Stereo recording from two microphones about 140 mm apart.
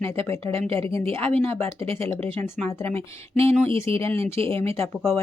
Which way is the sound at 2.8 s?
45° right (ahead or behind).